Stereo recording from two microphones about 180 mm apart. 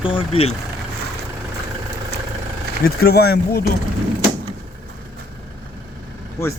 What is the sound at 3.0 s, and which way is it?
Speech, 60° left (ahead or behind).